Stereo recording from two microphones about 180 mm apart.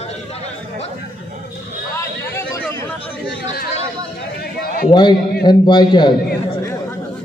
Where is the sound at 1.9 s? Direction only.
15° left (ahead or behind).